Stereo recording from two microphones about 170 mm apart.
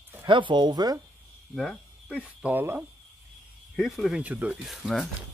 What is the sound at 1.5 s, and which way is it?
Speech, centre (ahead or behind).